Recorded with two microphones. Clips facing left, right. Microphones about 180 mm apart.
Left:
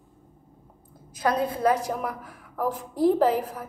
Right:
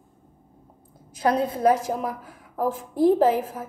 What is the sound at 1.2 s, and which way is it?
Speech, 30° right (ahead or behind).